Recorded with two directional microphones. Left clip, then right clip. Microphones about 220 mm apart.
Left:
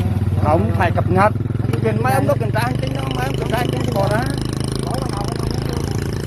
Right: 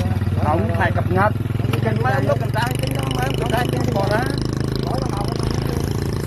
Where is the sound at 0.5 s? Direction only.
15° left (ahead or behind).